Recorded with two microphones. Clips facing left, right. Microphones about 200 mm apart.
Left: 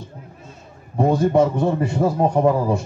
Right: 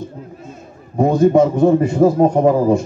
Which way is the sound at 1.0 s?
20° right (ahead or behind).